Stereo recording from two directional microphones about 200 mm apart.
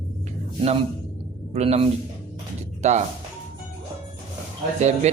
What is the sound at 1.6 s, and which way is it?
Speech, 30° right (ahead or behind).